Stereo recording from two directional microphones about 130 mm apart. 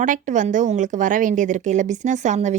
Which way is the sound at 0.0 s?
75° right (ahead or behind).